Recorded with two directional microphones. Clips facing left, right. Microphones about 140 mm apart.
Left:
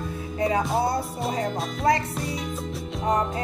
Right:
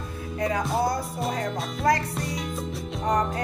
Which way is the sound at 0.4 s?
25° left (ahead or behind).